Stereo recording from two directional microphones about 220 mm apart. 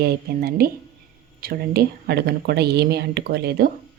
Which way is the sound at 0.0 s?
45° right (ahead or behind).